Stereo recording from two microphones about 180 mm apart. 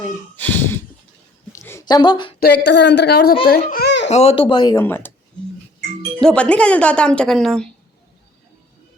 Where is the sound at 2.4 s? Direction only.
65° left (ahead or behind).